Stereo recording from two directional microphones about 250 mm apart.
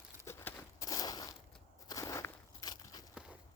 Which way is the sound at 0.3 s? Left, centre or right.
Centre.